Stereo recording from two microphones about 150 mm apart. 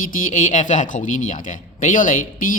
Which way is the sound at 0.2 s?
60° left (ahead or behind).